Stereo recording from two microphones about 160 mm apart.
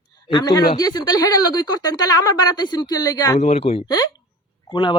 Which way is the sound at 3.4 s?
40° left (ahead or behind).